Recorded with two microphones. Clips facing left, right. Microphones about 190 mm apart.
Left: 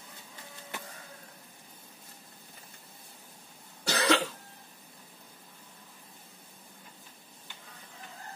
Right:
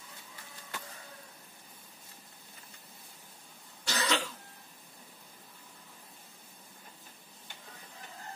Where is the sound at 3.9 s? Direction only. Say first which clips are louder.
Left 6 dB; 60° left (ahead or behind).